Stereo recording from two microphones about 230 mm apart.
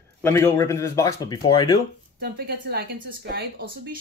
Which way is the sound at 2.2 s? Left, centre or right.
Right.